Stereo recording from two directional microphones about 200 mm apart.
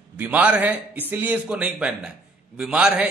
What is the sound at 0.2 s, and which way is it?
A man's voice, 5° right (ahead or behind).